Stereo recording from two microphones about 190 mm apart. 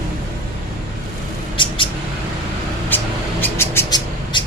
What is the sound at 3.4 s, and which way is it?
Cat, 15° left (ahead or behind).